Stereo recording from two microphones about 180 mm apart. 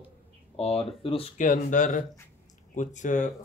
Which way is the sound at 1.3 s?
45° left (ahead or behind).